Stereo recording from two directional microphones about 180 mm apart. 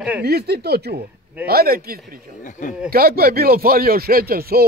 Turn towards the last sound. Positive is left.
turn(degrees=-55)  # may be behind; listen again after turning